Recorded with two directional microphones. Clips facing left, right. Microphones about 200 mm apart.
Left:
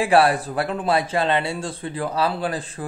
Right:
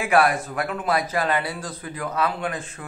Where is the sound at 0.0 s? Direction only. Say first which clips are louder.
Left 3 dB; 30° left (ahead or behind).